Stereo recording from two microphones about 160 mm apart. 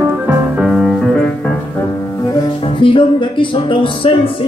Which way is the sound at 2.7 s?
30° left (ahead or behind).